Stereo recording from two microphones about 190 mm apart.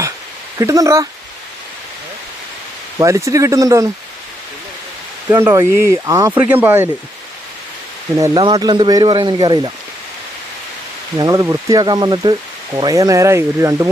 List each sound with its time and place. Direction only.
0.6 s speech: 15° right (ahead or behind)
3.0 s speech: 15° right (ahead or behind)
5.3 s speech: 10° right (ahead or behind)
8.2 s speech: 20° right (ahead or behind)
11.2 s speech: 20° right (ahead or behind)